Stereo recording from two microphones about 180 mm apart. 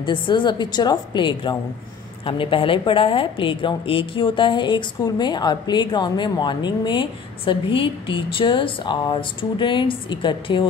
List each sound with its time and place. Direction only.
0.0 s a woman's voice: 25° left (ahead or behind)